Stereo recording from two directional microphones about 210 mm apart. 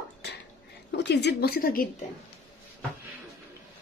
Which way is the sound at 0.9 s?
55° left (ahead or behind).